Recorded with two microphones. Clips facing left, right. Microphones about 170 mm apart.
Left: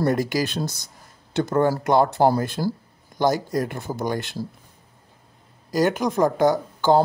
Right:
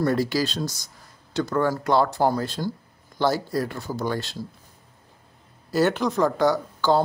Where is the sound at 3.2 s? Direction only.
15° left (ahead or behind).